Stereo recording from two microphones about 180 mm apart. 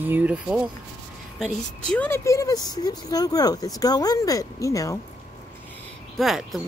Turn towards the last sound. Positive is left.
turn(degrees=0)  # may be behind; listen again after turning